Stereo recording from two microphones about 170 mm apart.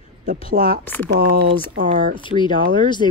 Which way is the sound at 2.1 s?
30° left (ahead or behind).